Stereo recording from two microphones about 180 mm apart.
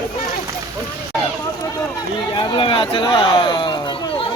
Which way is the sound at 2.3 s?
30° left (ahead or behind).